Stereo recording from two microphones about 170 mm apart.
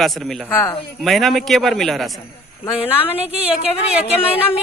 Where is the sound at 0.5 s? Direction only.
15° left (ahead or behind).